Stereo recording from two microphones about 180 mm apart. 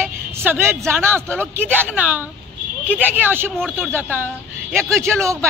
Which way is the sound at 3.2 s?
10° right (ahead or behind).